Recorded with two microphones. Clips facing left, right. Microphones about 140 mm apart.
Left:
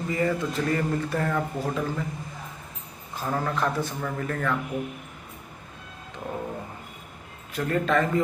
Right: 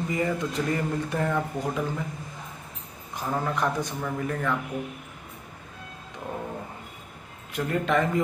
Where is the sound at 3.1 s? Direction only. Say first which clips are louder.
Even; 15° right (ahead or behind).